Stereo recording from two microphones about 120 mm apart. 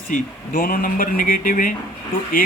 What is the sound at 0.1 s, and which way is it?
Speech, 90° left.